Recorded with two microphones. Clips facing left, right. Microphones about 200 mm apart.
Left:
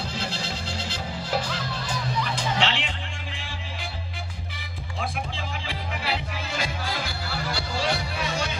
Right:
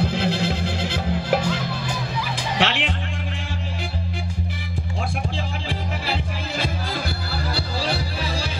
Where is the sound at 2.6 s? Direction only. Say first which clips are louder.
Right 7 dB; 55° right (ahead or behind).